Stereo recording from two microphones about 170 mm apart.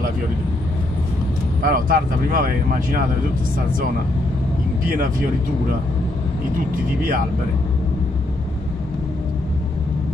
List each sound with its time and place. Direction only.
1.6 s speech: 55° right (ahead or behind)